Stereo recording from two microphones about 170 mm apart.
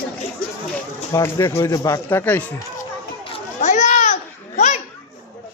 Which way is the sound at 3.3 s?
45° left (ahead or behind).